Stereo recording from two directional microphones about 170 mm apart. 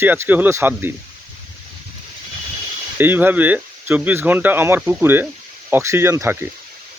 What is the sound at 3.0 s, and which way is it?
Speech, 10° right (ahead or behind).